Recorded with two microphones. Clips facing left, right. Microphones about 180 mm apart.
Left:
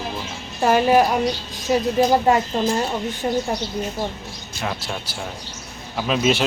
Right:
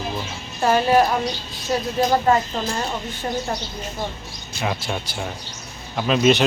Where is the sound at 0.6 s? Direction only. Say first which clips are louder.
Left 1 dB; 10° left (ahead or behind).